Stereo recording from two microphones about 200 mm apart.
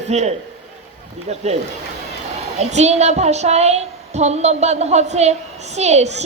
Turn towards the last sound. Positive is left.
turn(degrees=-35)  # may be behind; listen again after turning